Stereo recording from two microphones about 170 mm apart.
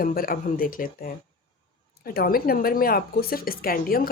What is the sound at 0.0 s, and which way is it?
A woman's voice, 60° left (ahead or behind).